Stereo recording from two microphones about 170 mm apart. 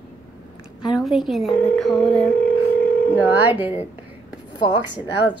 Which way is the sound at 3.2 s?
10° right (ahead or behind).